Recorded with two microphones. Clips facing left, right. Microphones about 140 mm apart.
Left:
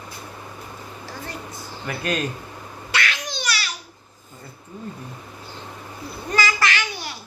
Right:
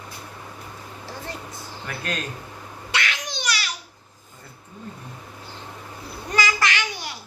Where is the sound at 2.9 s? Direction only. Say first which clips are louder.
Left 2 dB; 20° right (ahead or behind).